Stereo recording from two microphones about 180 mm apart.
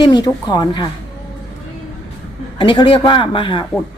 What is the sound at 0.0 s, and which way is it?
Speech, 25° left (ahead or behind).